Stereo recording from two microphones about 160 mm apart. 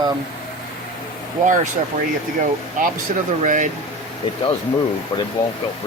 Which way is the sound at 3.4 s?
55° right (ahead or behind).